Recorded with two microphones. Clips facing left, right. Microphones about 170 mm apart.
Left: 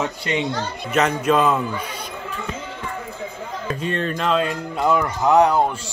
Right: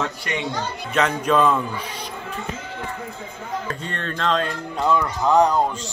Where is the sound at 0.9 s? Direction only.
5° left (ahead or behind).